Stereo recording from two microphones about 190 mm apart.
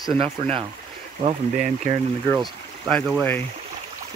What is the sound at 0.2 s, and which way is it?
Speech, 30° right (ahead or behind).